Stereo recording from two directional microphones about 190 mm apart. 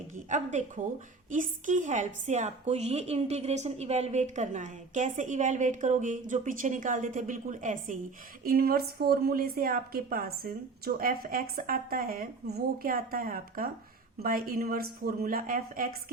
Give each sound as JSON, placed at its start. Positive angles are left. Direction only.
{"t": 0.3, "sound": "a woman's voice", "side_deg": -40}
{"t": 8.4, "sound": "a woman's voice", "side_deg": -50}